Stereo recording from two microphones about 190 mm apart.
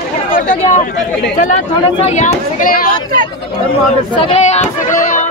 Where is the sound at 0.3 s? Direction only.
45° left (ahead or behind).